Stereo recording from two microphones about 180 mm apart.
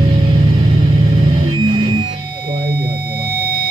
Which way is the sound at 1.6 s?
25° right (ahead or behind).